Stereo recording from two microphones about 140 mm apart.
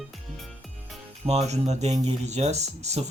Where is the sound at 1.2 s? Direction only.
50° right (ahead or behind).